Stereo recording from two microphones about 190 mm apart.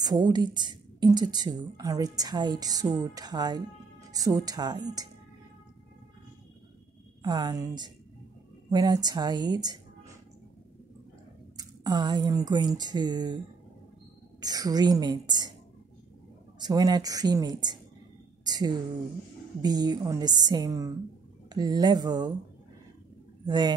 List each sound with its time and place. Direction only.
0.0 s a woman's voice: 20° right (ahead or behind)
7.2 s a woman's voice: 20° right (ahead or behind)
11.5 s speech: 20° right (ahead or behind)
14.4 s a woman's voice: 20° right (ahead or behind)
16.5 s a woman's voice: 20° right (ahead or behind)
23.4 s speech: 20° right (ahead or behind)